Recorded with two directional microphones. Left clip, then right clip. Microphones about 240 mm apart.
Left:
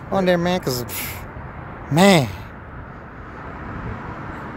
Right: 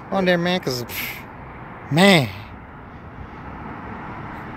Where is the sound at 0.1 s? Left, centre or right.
Centre.